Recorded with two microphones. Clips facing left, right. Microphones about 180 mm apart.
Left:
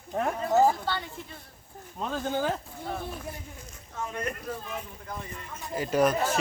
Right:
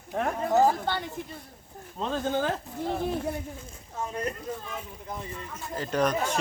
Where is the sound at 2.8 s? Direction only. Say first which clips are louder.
Right 8 dB; 30° right (ahead or behind).